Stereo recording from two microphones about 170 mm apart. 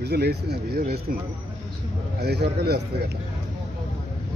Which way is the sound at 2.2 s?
75° right (ahead or behind).